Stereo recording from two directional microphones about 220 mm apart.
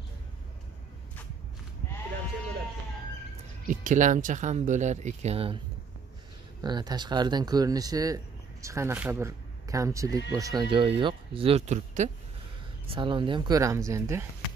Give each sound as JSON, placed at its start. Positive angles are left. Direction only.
{"t": 3.6, "sound": "speech", "side_deg": -35}
{"t": 6.6, "sound": "speech", "side_deg": -20}